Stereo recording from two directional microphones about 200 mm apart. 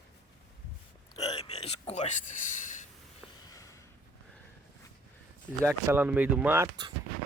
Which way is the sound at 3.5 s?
15° left (ahead or behind).